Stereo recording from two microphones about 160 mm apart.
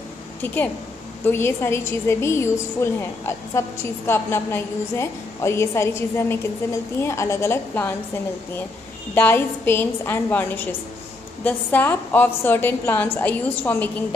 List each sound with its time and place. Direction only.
1.2 s a woman's voice: 15° left (ahead or behind)
9.1 s a woman's voice: 15° left (ahead or behind)